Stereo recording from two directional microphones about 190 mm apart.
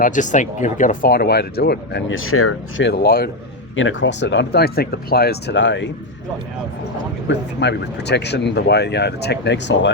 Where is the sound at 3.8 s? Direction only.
80° left.